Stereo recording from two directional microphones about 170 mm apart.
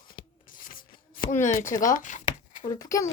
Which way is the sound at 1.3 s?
50° left (ahead or behind).